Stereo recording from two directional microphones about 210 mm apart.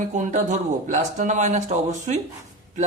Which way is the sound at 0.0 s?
35° right (ahead or behind).